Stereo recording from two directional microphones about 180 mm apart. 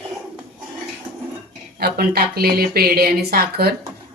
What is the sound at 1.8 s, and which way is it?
A woman's voice, 60° right (ahead or behind).